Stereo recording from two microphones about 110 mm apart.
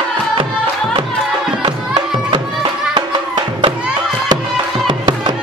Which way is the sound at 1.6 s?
40° right (ahead or behind).